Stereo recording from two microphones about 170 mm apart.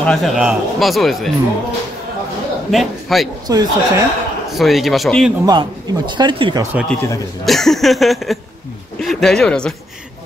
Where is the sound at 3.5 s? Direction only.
20° right (ahead or behind).